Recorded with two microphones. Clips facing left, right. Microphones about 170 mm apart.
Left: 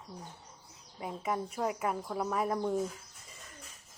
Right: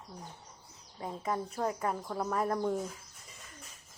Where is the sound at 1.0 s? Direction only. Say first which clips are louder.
Even; 10° left (ahead or behind).